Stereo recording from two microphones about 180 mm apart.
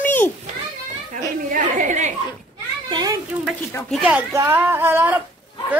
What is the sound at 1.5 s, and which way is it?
Speech, 45° right (ahead or behind).